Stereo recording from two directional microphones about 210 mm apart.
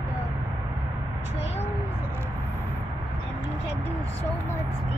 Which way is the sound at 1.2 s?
30° left (ahead or behind).